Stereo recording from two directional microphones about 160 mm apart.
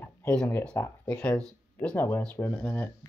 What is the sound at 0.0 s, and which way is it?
Speech, 10° left (ahead or behind).